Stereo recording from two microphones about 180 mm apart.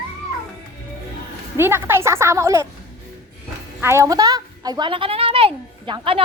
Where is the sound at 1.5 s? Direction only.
15° right (ahead or behind).